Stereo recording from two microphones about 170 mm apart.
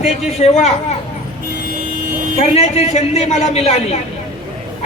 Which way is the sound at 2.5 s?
40° left (ahead or behind).